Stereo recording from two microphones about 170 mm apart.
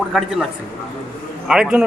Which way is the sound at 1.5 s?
5° right (ahead or behind).